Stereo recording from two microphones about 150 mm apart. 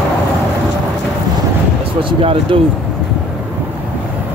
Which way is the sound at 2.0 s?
35° right (ahead or behind).